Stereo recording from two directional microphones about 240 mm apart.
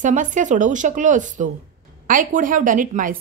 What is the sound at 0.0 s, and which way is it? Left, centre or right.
Speech, right.